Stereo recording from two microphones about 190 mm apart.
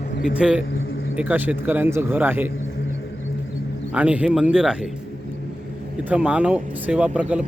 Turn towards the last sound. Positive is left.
turn(degrees=-5)  # may be behind; listen again after turning